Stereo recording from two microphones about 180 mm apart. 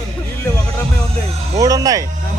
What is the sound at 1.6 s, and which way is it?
Speech, 20° right (ahead or behind).